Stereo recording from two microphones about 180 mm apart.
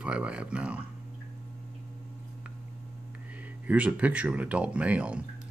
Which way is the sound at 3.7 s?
10° right (ahead or behind).